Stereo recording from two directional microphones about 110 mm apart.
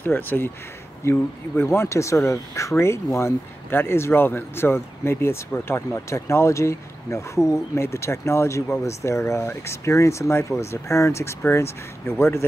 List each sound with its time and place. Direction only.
0.0 s speech: 20° left (ahead or behind)